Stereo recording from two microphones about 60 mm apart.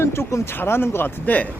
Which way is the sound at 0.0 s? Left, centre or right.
Left.